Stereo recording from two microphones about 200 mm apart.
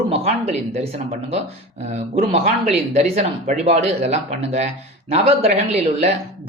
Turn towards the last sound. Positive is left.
turn(degrees=-30)  # may be behind; listen again after turning